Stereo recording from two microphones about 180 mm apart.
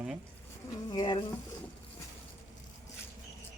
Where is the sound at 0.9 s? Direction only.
20° left (ahead or behind).